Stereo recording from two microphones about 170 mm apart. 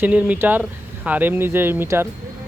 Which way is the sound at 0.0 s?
10° right (ahead or behind).